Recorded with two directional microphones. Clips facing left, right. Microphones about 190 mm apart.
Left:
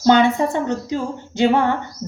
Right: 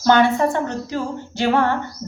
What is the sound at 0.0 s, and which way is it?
A woman's voice, 20° left (ahead or behind).